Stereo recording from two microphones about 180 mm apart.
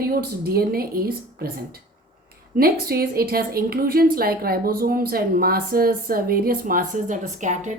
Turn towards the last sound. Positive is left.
turn(degrees=-45)  # may be behind; listen again after turning